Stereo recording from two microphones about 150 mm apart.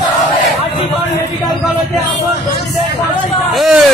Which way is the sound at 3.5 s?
Centre (ahead or behind).